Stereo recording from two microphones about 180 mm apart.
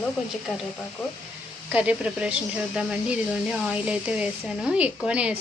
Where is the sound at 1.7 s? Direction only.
5° right (ahead or behind).